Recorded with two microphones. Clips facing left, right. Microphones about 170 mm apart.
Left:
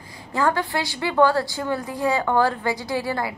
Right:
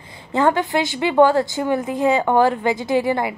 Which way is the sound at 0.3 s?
25° right (ahead or behind).